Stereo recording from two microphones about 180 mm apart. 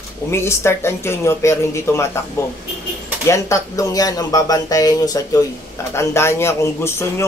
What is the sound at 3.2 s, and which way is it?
Speech, 15° left (ahead or behind).